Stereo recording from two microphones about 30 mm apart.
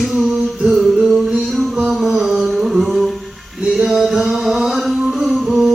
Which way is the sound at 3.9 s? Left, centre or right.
Centre.